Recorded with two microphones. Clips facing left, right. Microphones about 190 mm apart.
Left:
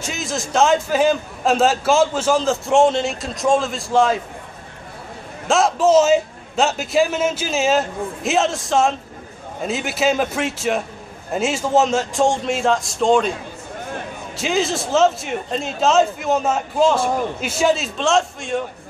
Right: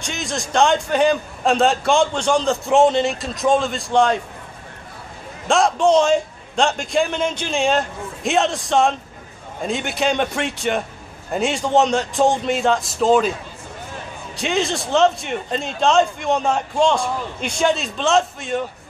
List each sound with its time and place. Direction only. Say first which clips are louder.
0.0 s a man's voice: left 1 dB; centre (ahead or behind)
5.5 s a man's voice: left 1 dB; 5° left (ahead or behind)
14.3 s a man's voice: left 1 dB; centre (ahead or behind)